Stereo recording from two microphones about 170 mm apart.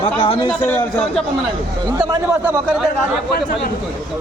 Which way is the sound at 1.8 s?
20° right (ahead or behind).